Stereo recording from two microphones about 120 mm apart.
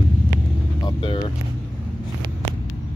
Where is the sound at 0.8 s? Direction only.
40° left (ahead or behind).